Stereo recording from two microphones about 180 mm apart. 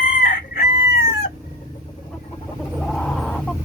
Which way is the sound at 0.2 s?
60° left (ahead or behind).